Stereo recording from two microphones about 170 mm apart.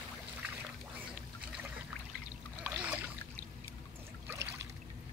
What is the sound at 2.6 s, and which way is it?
Boat, 10° right (ahead or behind).